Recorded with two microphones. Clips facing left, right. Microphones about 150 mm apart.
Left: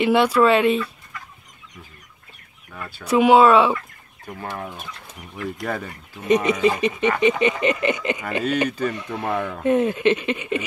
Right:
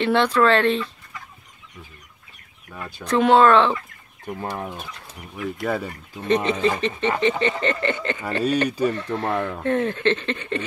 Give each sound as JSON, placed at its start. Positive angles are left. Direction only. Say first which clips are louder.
{"t": 0.0, "sound": "speech", "louder": "left 2 dB", "side_deg": 10}
{"t": 2.7, "sound": "speech", "louder": "right 1 dB", "side_deg": -10}
{"t": 3.1, "sound": "speech", "louder": "left 2 dB", "side_deg": 10}
{"t": 4.3, "sound": "speech", "louder": "right 2 dB", "side_deg": -20}
{"t": 5.1, "sound": "speech", "louder": "right 1 dB", "side_deg": 0}
{"t": 6.2, "sound": "speech", "louder": "left 2 dB", "side_deg": 15}
{"t": 8.6, "sound": "speech", "louder": "right 2 dB", "side_deg": -10}
{"t": 8.9, "sound": "speech", "louder": "right 1 dB", "side_deg": 15}